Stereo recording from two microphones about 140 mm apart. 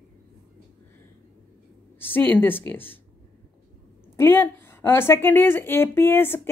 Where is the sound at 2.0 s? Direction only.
15° left (ahead or behind).